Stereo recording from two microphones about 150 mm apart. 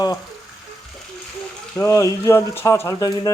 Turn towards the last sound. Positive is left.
turn(degrees=25)  # may be behind; listen again after turning